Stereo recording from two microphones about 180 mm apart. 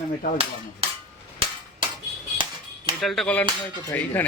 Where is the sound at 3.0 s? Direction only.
Centre (ahead or behind).